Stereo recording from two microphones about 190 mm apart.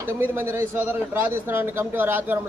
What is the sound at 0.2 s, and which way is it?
A man's voice, 10° right (ahead or behind).